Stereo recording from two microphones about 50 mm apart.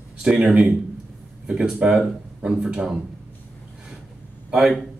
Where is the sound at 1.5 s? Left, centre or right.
Centre.